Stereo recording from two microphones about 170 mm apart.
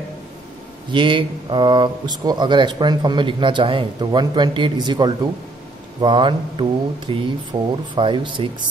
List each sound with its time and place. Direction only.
0.9 s speech: 30° right (ahead or behind)